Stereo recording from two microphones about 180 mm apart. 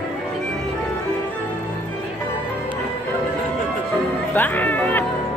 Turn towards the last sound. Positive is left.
turn(degrees=10)  # may be behind; listen again after turning